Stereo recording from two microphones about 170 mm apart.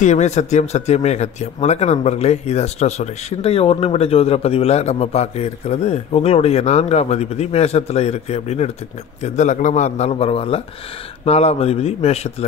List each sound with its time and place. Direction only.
0.0 s speech: 45° left (ahead or behind)